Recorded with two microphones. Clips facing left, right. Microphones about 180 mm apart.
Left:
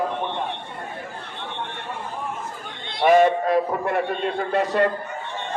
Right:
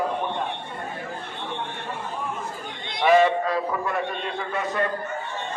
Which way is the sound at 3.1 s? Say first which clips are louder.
Left 2 dB; 50° left (ahead or behind).